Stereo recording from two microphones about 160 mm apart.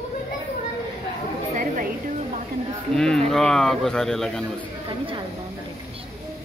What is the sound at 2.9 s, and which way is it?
Speech, 5° left (ahead or behind).